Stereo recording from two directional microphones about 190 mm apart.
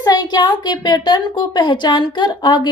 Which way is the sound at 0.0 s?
20° left (ahead or behind).